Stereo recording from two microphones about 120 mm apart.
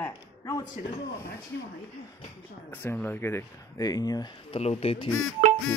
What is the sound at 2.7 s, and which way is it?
Speech, 15° left (ahead or behind).